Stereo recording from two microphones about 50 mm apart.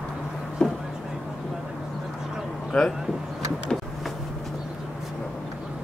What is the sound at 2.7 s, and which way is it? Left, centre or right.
Speech, left.